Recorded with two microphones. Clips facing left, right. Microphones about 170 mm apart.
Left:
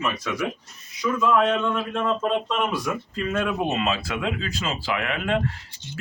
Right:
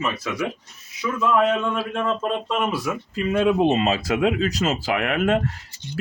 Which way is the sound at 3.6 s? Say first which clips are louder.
Right 6 dB; 30° right (ahead or behind).